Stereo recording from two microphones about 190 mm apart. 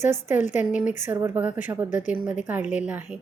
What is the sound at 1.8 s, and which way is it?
Speech, 40° left (ahead or behind).